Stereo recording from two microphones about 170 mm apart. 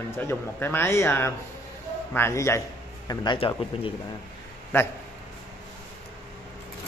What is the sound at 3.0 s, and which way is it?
Speech, 30° left (ahead or behind).